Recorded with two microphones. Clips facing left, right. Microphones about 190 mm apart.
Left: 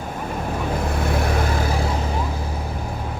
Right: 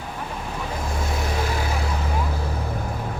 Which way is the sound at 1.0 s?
60° left (ahead or behind).